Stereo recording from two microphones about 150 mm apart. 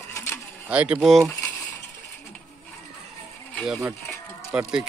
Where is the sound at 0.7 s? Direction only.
10° right (ahead or behind).